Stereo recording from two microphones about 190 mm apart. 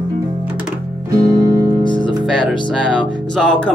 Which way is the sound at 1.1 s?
20° right (ahead or behind).